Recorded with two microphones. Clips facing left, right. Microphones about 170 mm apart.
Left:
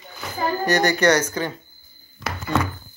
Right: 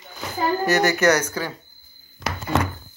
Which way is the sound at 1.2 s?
20° left (ahead or behind).